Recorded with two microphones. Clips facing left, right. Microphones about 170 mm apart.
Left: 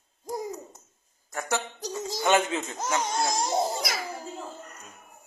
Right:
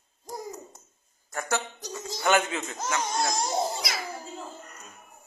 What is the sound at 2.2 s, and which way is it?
Speech, 25° left (ahead or behind).